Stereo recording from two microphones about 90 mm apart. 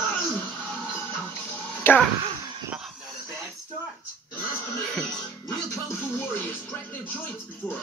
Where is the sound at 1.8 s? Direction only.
25° left (ahead or behind).